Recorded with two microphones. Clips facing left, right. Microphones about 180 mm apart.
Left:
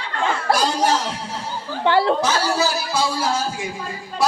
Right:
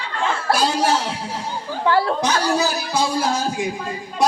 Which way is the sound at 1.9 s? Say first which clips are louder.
Left 1 dB; 25° left (ahead or behind).